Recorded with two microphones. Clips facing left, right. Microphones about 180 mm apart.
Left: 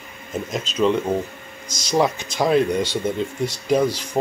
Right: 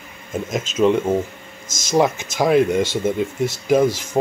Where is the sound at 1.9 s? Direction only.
10° right (ahead or behind).